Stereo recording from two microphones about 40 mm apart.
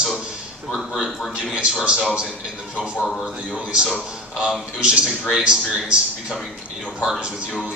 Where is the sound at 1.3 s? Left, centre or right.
Right.